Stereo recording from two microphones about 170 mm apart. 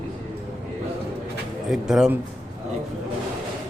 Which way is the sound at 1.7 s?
Centre (ahead or behind).